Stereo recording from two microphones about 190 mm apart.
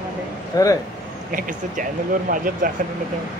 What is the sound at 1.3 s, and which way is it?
Speech, 45° right (ahead or behind).